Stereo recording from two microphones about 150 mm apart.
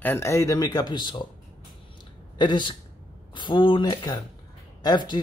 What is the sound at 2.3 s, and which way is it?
Speech, 30° left (ahead or behind).